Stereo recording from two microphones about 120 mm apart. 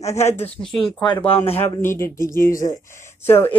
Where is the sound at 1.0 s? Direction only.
45° left (ahead or behind).